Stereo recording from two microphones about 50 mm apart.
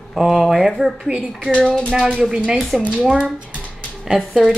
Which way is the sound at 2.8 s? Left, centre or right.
Centre.